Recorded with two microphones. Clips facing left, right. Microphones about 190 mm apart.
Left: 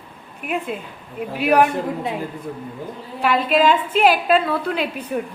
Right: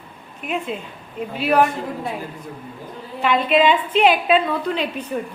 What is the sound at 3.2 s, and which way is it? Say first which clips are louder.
A woman's voice: even; 5° left (ahead or behind).